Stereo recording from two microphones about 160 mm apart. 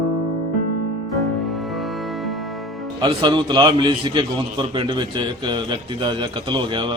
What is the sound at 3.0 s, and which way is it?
A man's voice, 30° right (ahead or behind).